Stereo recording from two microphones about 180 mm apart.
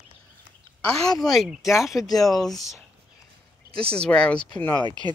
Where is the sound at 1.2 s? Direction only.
Centre (ahead or behind).